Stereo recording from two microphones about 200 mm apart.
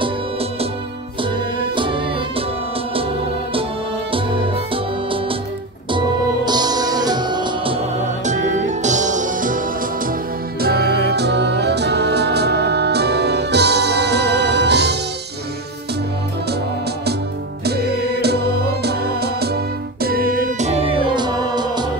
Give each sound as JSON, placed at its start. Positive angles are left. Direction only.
{"t": 0.0, "sound": "music", "side_deg": -30}
{"t": 1.8, "sound": "music", "side_deg": -25}
{"t": 4.1, "sound": "music", "side_deg": -25}
{"t": 5.9, "sound": "music", "side_deg": -20}
{"t": 8.3, "sound": "music", "side_deg": -35}
{"t": 10.6, "sound": "music", "side_deg": -55}
{"t": 18.2, "sound": "music", "side_deg": -55}